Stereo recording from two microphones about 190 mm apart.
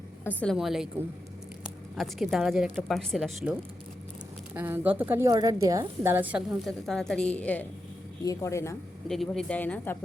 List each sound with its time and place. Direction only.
0.3 s speech: 10° left (ahead or behind)
0.5 s a woman's voice: centre (ahead or behind); by 8.7 s 15° left (ahead or behind)
9.0 s speech: centre (ahead or behind)